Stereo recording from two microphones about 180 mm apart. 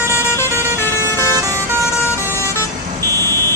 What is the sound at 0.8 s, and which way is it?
Vehicle, 15° left (ahead or behind).